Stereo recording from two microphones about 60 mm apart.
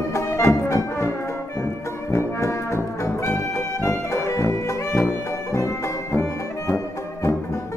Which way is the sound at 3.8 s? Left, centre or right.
Left.